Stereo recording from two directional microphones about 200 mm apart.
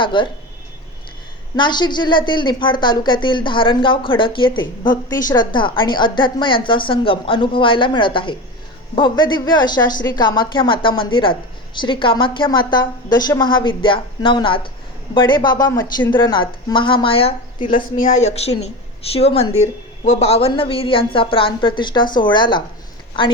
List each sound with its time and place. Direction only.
0.0 s a woman's voice: 25° left (ahead or behind)
1.5 s a woman's voice: 20° left (ahead or behind)